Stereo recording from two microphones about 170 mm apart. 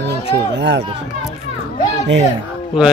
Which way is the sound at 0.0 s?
85° right.